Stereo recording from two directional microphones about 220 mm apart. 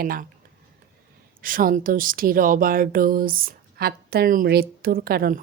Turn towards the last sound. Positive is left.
turn(degrees=-40)  # may be behind; listen again after turning